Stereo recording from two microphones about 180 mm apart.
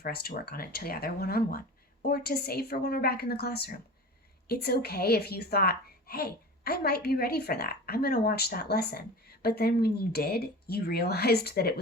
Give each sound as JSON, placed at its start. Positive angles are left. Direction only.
{"t": 0.0, "sound": "a woman's voice", "side_deg": 60}